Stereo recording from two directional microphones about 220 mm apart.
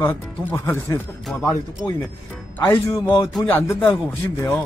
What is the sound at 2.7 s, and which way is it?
Speech, 10° left (ahead or behind).